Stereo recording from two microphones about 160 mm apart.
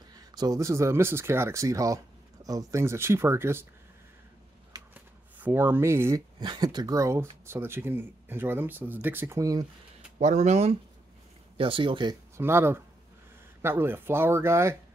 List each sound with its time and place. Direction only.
0.1 s speech: 25° right (ahead or behind)
4.9 s shuffling cards: 15° right (ahead or behind)
6.4 s speech: 25° right (ahead or behind)
10.1 s speech: 45° right (ahead or behind); by 12.2 s 30° right (ahead or behind)
12.4 s speech: 15° right (ahead or behind)